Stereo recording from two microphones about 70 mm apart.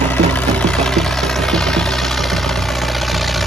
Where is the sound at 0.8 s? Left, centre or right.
Centre.